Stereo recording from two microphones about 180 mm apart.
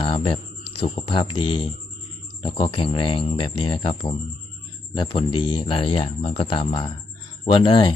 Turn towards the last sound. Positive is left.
turn(degrees=25)  # may be behind; listen again after turning